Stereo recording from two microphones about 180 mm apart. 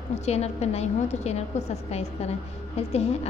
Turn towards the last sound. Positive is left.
turn(degrees=35)  # may be behind; listen again after turning